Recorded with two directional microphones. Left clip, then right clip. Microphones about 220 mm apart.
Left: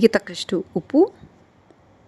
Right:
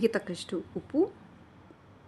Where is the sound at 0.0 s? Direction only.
35° left (ahead or behind).